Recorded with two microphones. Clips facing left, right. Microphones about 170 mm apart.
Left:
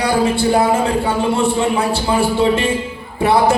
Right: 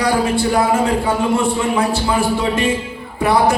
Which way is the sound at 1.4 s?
30° left (ahead or behind).